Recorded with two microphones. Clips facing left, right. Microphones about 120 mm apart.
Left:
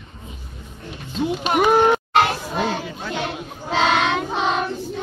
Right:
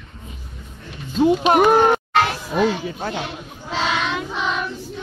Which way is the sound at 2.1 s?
30° left (ahead or behind).